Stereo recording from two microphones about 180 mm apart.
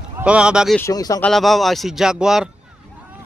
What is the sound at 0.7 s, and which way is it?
Speech, 20° left (ahead or behind).